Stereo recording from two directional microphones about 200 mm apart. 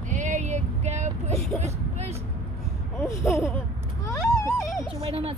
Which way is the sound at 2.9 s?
15° left (ahead or behind).